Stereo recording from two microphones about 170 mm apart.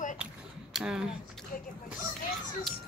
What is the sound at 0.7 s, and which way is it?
Speech, 5° right (ahead or behind).